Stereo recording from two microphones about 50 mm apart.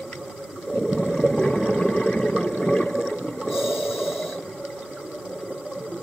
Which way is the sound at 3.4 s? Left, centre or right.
Centre.